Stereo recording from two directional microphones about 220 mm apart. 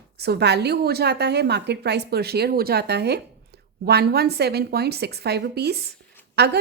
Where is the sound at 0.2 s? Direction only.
45° right (ahead or behind).